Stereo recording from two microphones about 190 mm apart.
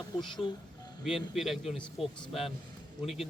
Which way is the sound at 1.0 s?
Centre (ahead or behind).